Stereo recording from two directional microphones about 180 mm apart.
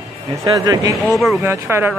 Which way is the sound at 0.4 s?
20° right (ahead or behind).